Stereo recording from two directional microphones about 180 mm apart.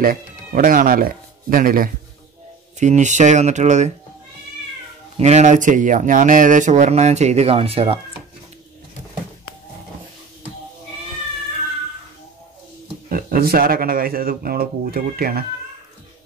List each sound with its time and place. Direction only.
0.0 s speech: 50° right (ahead or behind)
5.2 s speech: 40° right (ahead or behind)
13.1 s speech: 55° right (ahead or behind)